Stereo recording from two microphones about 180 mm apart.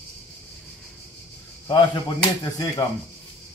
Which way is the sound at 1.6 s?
25° left (ahead or behind).